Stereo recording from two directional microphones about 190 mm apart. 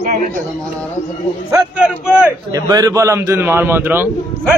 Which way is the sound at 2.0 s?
5° right (ahead or behind).